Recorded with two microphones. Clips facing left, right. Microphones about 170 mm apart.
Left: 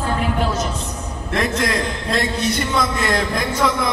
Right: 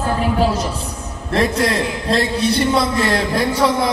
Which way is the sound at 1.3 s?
30° right (ahead or behind).